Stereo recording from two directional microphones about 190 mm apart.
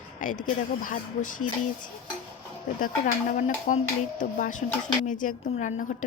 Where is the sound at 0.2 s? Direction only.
45° left (ahead or behind).